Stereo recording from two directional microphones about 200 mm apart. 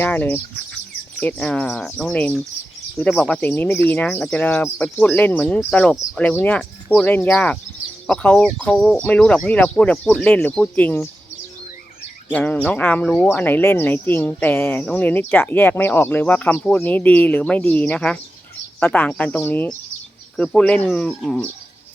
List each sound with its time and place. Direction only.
0.0 s speech: 10° left (ahead or behind)
12.3 s speech: 5° left (ahead or behind)